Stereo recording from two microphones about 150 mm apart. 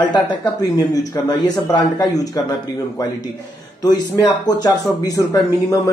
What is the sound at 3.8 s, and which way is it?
Speech, 25° left (ahead or behind).